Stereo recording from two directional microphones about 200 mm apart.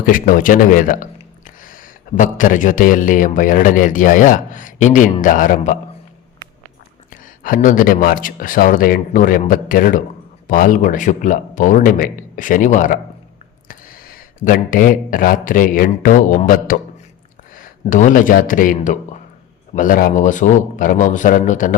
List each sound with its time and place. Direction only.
0.0 s a man's voice: 45° left (ahead or behind)
7.1 s a man's voice: 45° left (ahead or behind)